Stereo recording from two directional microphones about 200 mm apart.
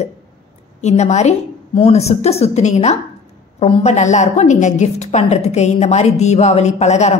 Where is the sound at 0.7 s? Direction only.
35° left (ahead or behind).